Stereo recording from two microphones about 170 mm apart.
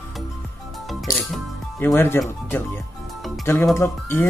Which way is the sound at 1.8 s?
15° left (ahead or behind).